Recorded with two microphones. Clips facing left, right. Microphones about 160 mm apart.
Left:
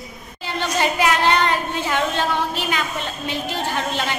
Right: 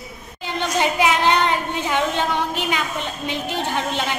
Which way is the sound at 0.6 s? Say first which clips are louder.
Right 1 dB; 15° right (ahead or behind).